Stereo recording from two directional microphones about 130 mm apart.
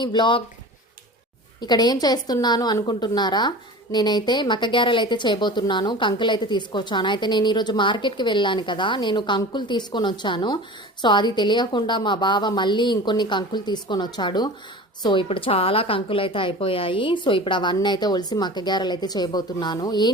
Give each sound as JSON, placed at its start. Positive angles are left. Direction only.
{"t": 0.0, "sound": "speech", "side_deg": 35}
{"t": 1.6, "sound": "a woman's voice", "side_deg": 30}